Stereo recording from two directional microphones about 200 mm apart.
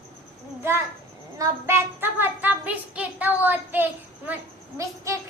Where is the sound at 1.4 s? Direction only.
10° right (ahead or behind).